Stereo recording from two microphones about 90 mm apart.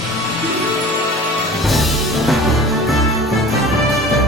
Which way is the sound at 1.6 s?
Centre (ahead or behind).